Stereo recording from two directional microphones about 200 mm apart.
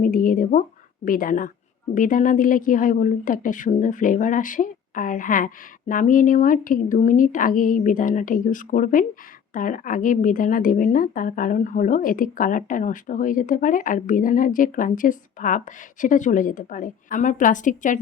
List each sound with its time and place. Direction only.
0.0 s a woman's voice: 40° left (ahead or behind)